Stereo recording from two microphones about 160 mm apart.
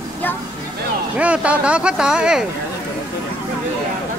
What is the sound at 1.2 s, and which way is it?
Speech, 5° right (ahead or behind).